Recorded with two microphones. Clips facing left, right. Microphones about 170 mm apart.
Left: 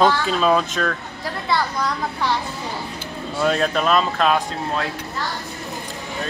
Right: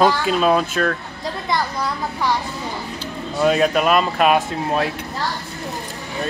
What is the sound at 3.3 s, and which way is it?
Speech, 5° right (ahead or behind).